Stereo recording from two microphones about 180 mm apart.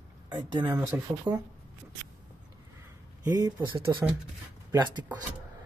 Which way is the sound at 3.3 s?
20° right (ahead or behind).